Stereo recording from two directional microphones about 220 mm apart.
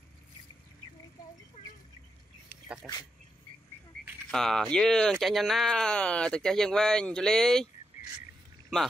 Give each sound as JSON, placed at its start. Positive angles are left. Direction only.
{"t": 1.6, "sound": "bird", "side_deg": 30}
{"t": 4.3, "sound": "speech", "side_deg": 0}